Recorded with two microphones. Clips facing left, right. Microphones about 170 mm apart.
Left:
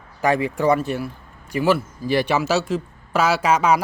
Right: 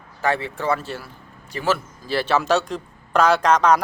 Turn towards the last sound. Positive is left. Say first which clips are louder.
# right 1 dB
turn(degrees=5)  # may be behind; listen again after turning